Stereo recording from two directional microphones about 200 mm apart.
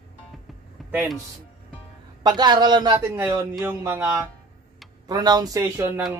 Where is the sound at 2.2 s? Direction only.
20° right (ahead or behind).